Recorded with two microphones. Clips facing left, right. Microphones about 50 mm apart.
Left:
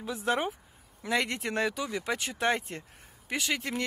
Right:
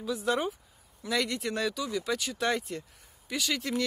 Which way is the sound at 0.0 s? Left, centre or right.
Left.